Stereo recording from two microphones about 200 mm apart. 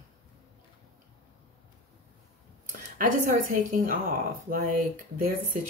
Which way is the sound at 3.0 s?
40° right (ahead or behind).